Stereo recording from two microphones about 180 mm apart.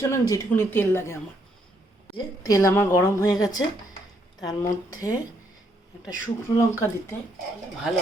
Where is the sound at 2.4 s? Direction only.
20° left (ahead or behind).